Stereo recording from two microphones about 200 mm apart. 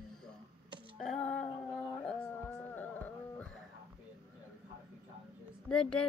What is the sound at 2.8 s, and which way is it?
Carnatic music, 10° left (ahead or behind).